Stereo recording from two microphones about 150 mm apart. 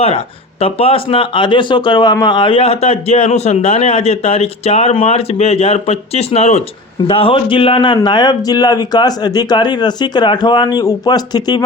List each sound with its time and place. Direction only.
0.6 s a man's voice: 40° left (ahead or behind)